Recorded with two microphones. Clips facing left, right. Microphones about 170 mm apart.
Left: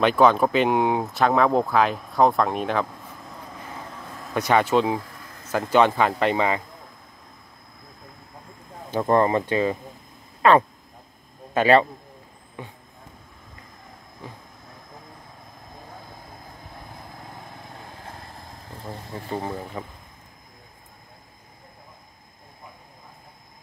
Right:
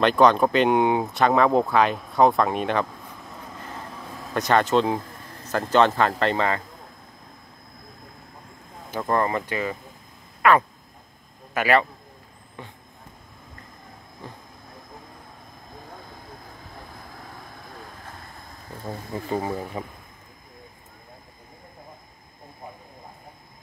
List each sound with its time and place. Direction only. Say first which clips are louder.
0.0 s speech: even; 5° left (ahead or behind)
8.9 s speech: left 4 dB; 20° left (ahead or behind)
19.3 s speech: right 2 dB; 5° right (ahead or behind)